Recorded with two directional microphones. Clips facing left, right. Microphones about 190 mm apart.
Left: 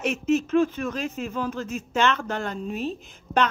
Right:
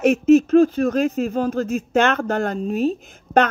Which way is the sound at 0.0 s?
45° right (ahead or behind).